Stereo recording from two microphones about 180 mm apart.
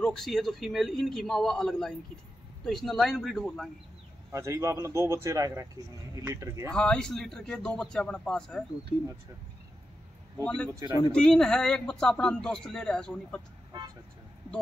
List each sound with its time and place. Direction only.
0.0 s speech: centre (ahead or behind)
4.3 s a man's voice: 15° right (ahead or behind)
6.7 s speech: 5° left (ahead or behind)
10.4 s speech: 5° left (ahead or behind)
13.7 s vehicle: 20° right (ahead or behind)